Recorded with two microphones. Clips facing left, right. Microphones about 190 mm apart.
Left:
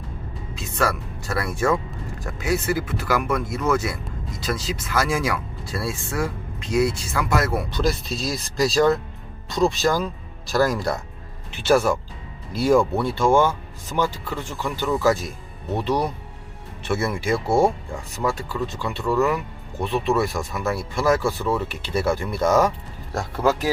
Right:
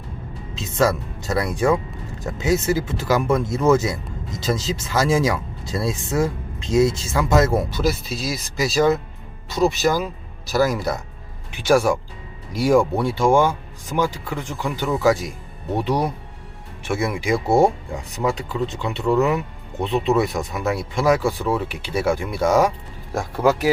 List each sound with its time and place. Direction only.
0.5 s speech: 20° right (ahead or behind)
7.7 s speech: 5° right (ahead or behind)